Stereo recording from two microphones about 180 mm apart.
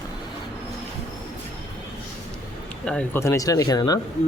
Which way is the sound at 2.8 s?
5° left (ahead or behind).